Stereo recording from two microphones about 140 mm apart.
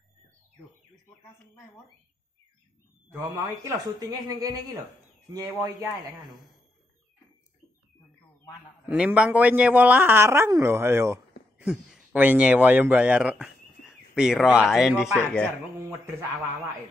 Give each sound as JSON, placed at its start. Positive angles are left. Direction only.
{"t": 3.1, "sound": "speech", "side_deg": -25}
{"t": 8.8, "sound": "speech", "side_deg": -10}
{"t": 15.8, "sound": "speech", "side_deg": -20}